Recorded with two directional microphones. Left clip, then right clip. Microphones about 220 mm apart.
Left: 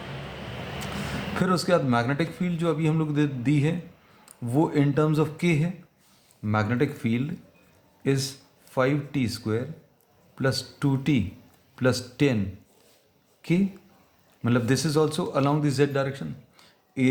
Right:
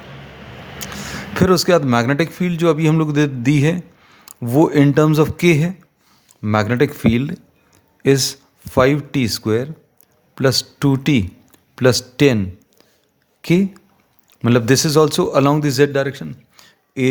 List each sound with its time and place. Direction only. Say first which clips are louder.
1.4 s a man's voice: right 10 dB; 45° right (ahead or behind)
13.4 s a man's voice: right 9 dB; 45° right (ahead or behind)